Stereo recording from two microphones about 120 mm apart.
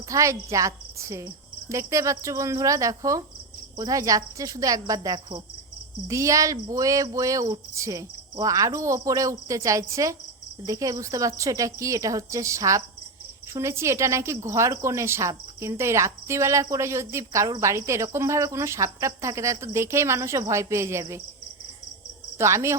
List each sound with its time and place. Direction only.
0.1 s a woman's voice: 25° right (ahead or behind)
22.4 s a woman's voice: 25° right (ahead or behind)